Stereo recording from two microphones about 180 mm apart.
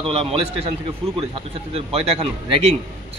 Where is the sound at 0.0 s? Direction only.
30° right (ahead or behind).